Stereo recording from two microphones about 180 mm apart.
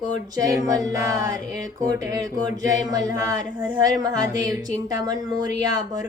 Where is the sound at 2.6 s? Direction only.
20° right (ahead or behind).